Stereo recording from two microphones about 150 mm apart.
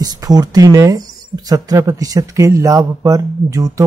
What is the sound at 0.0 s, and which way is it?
Speech, 25° right (ahead or behind).